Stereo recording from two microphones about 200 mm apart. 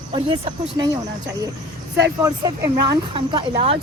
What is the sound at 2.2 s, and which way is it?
A woman's voice, 15° right (ahead or behind).